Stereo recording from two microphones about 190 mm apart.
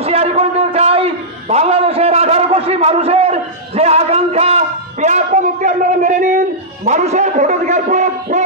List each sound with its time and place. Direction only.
0.0 s a man's voice: 30° right (ahead or behind)